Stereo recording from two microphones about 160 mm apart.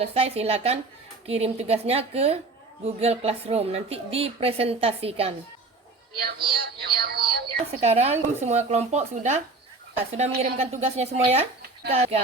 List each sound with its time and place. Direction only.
0.0 s a woman's voice: 40° right (ahead or behind)
6.1 s speech: 75° right (ahead or behind)
7.8 s speech: 40° right (ahead or behind)
10.4 s a woman's voice: 40° right (ahead or behind)